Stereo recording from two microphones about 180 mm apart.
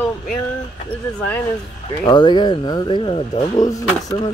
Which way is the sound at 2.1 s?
25° left (ahead or behind).